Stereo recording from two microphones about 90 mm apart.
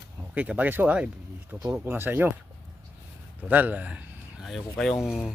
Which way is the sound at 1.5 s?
30° right (ahead or behind).